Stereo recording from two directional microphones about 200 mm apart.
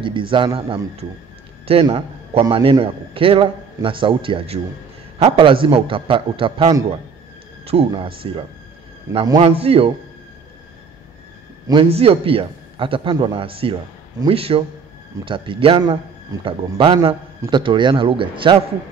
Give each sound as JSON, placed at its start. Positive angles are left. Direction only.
{"t": 0.0, "sound": "a man's voice", "side_deg": -25}
{"t": 11.6, "sound": "a man's voice", "side_deg": -25}